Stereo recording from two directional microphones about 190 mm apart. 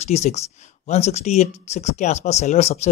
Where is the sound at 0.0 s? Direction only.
35° left (ahead or behind).